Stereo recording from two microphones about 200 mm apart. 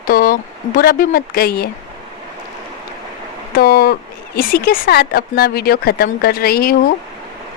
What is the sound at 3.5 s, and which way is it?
A woman's voice, 50° left (ahead or behind).